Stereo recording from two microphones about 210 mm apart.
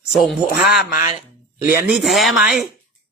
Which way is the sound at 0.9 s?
35° left (ahead or behind).